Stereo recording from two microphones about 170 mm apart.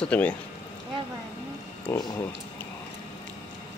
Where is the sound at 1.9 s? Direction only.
15° left (ahead or behind).